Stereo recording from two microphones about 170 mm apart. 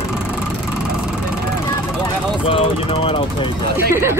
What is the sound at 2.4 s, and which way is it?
Speech, 35° left (ahead or behind).